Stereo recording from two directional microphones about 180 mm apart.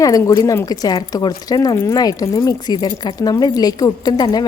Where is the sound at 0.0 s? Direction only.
15° left (ahead or behind).